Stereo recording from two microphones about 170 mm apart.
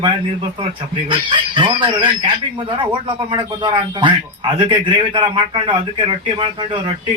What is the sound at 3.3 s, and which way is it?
A man's voice, 30° right (ahead or behind).